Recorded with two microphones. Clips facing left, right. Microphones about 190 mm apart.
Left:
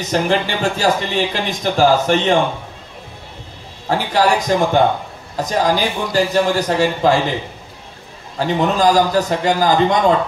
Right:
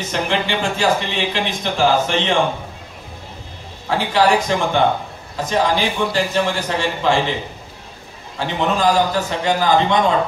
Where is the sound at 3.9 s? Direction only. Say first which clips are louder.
Left 1 dB; 40° left (ahead or behind).